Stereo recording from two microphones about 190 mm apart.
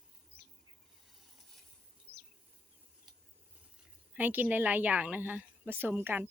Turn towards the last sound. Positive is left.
turn(degrees=-10)  # may be behind; listen again after turning